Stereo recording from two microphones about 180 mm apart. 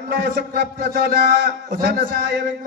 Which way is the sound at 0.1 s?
75° right (ahead or behind).